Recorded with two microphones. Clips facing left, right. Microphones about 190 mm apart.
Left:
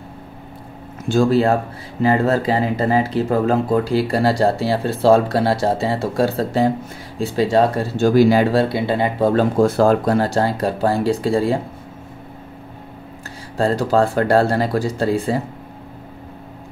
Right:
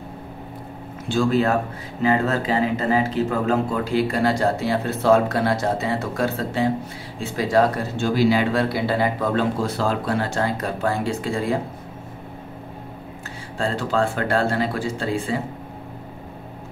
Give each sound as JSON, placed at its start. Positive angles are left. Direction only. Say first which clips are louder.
{"t": 1.0, "sound": "speech", "louder": "left 4 dB", "side_deg": 45}
{"t": 8.0, "sound": "speech", "louder": "left 6 dB", "side_deg": 45}
{"t": 9.3, "sound": "speech", "louder": "left 6 dB", "side_deg": 45}
{"t": 13.6, "sound": "speech", "louder": "left 6 dB", "side_deg": 40}